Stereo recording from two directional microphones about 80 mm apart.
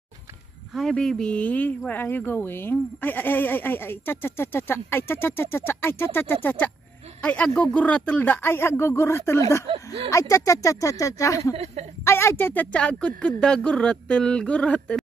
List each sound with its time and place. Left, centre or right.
0.7 s a woman's voice: centre; by 12.6 s left
12.7 s speech: centre